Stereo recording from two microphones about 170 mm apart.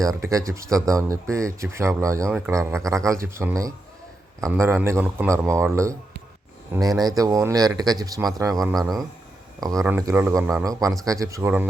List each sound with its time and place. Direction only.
0.0 s speech: 20° right (ahead or behind)